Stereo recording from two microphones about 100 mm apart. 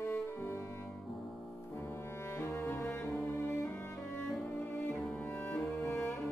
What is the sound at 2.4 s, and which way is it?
Music, 20° left (ahead or behind).